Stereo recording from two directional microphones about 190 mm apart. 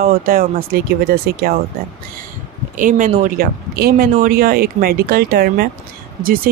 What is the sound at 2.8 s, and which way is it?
Speech, 45° right (ahead or behind).